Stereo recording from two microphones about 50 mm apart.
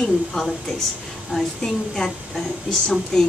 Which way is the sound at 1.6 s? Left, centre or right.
Centre.